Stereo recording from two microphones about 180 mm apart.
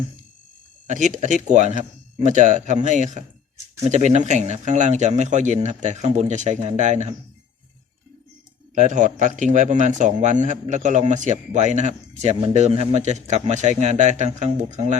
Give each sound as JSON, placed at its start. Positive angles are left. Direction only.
{"t": 0.9, "sound": "a man's voice", "side_deg": -45}
{"t": 8.7, "sound": "a man's voice", "side_deg": -45}